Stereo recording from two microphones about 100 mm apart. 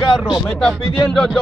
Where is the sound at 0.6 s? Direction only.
5° left (ahead or behind).